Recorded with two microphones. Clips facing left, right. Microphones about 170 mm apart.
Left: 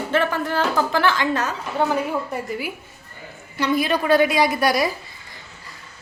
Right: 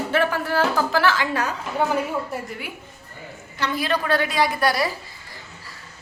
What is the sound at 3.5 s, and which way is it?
A woman's voice, 15° left (ahead or behind).